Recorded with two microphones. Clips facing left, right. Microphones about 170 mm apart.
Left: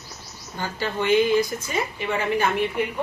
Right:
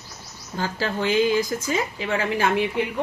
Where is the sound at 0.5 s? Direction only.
90° right.